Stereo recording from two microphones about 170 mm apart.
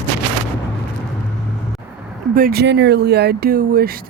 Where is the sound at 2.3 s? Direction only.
60° right (ahead or behind).